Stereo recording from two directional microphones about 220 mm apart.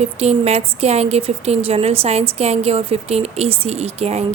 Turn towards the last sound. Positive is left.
turn(degrees=-30)  # may be behind; listen again after turning